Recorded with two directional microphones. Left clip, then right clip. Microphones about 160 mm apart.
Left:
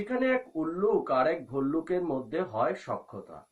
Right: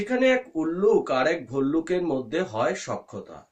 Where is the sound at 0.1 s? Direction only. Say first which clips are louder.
Right 7 dB; 35° right (ahead or behind).